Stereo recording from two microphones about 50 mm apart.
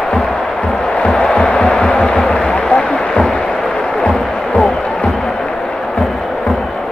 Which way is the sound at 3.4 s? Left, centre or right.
Centre.